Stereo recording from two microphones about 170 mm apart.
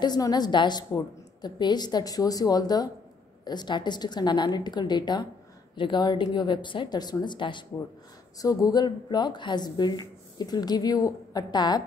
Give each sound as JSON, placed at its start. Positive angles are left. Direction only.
{"t": 0.0, "sound": "a woman's voice", "side_deg": 25}